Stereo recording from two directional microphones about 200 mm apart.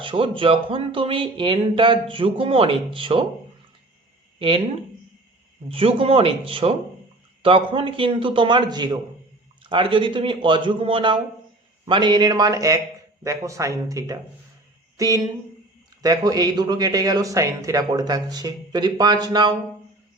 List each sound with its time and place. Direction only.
0.0 s speech: 25° right (ahead or behind)
4.4 s speech: 25° right (ahead or behind)
5.6 s speech: 30° right (ahead or behind)